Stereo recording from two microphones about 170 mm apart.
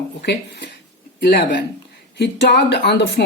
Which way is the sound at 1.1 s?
65° left (ahead or behind).